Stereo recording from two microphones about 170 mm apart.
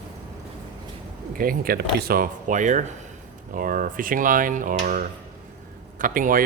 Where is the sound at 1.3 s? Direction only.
55° right (ahead or behind).